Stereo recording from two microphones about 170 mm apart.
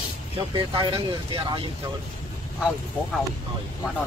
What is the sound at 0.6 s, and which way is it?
Speech, 30° right (ahead or behind).